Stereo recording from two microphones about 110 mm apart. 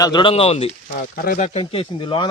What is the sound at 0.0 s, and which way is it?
Speech, 45° left (ahead or behind).